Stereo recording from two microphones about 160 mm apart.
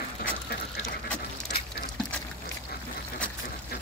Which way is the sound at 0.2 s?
60° left (ahead or behind).